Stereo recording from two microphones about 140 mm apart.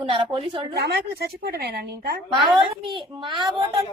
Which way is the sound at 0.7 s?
90° right.